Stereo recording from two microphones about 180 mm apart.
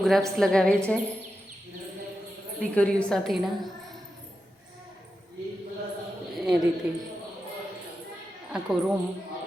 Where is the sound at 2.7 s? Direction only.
5° left (ahead or behind).